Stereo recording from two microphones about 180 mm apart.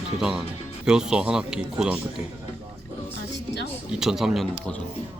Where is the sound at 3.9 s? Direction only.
5° right (ahead or behind).